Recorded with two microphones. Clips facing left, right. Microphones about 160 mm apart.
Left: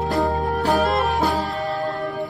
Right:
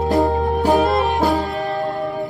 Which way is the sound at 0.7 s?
Centre (ahead or behind).